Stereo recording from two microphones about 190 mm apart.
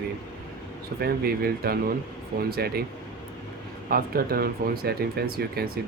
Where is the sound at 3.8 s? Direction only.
50° right (ahead or behind).